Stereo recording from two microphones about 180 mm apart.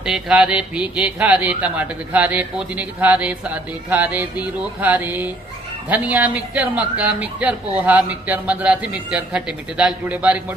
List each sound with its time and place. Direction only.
0.0 s speech: 5° right (ahead or behind)